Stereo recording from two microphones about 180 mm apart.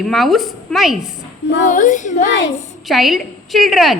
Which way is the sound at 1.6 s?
45° left (ahead or behind).